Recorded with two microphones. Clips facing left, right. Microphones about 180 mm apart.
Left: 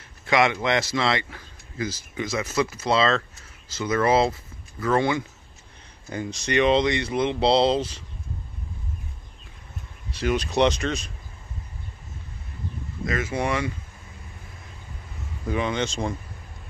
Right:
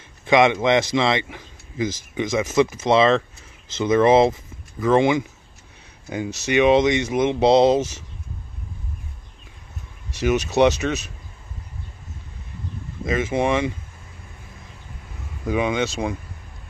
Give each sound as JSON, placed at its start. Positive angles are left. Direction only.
{"t": 0.2, "sound": "a man's voice", "side_deg": -20}
{"t": 13.0, "sound": "a man's voice", "side_deg": -25}
{"t": 15.4, "sound": "speech", "side_deg": -15}